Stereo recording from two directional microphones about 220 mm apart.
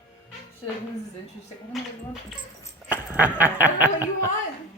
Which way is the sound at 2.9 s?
10° right (ahead or behind).